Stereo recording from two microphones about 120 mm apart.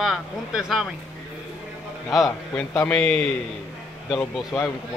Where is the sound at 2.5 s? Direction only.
20° left (ahead or behind).